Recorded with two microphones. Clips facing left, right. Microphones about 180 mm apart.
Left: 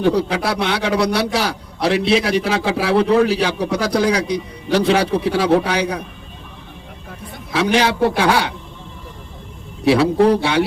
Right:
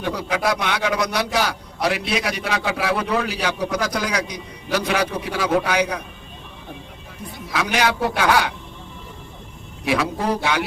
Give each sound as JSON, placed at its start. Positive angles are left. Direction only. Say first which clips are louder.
{"t": 0.0, "sound": "a man's voice", "louder": "left 6 dB", "side_deg": 30}
{"t": 7.5, "sound": "a man's voice", "louder": "left 5 dB", "side_deg": 30}
{"t": 9.8, "sound": "a man's voice", "louder": "left 7 dB", "side_deg": 30}
{"t": 10.2, "sound": "a man's voice", "louder": "left 10 dB", "side_deg": 65}
{"t": 10.4, "sound": "speech", "louder": "left 5 dB", "side_deg": 30}